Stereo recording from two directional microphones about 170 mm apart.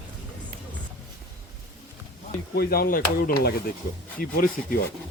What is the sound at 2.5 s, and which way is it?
Speech, 65° left (ahead or behind).